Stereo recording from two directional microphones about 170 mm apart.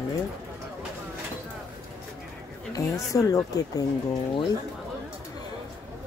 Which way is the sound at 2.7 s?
20° left (ahead or behind).